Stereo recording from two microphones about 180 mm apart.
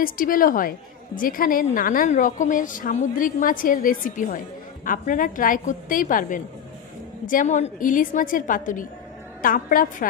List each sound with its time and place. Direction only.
0.0 s a woman's voice: 50° left (ahead or behind)